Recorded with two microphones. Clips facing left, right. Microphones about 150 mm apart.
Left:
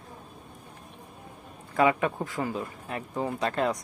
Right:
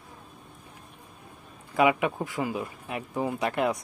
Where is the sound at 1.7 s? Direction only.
15° right (ahead or behind).